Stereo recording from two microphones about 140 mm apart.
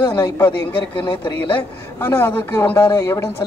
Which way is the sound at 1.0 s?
35° left (ahead or behind).